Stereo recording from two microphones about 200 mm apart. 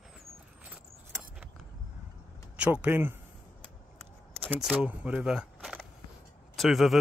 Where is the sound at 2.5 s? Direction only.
5° right (ahead or behind).